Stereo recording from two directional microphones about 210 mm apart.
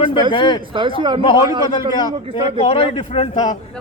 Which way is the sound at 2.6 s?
30° left (ahead or behind).